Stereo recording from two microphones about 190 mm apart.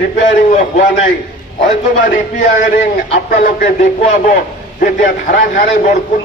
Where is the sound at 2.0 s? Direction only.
45° left (ahead or behind).